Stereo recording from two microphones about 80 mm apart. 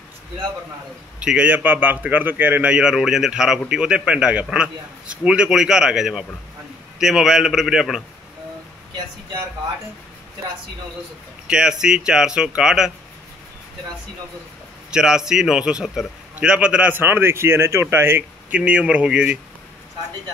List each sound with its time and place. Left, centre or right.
1.2 s a man's voice: centre
11.4 s a man's voice: centre
14.9 s a man's voice: centre; by 18.2 s right
18.5 s a man's voice: centre